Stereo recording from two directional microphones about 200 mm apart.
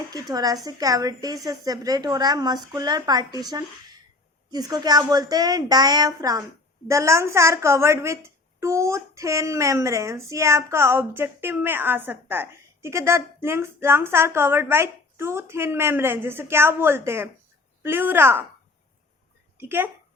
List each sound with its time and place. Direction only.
0.1 s a woman's voice: 20° right (ahead or behind)
19.5 s speech: 10° right (ahead or behind)